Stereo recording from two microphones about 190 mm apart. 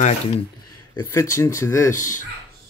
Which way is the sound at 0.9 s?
15° left (ahead or behind).